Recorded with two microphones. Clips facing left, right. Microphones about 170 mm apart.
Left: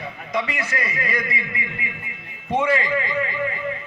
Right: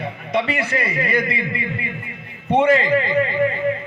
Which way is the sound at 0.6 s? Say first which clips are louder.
Right 5 dB; 30° right (ahead or behind).